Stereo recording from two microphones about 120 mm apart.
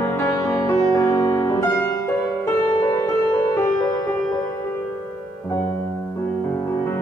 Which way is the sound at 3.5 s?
20° left (ahead or behind).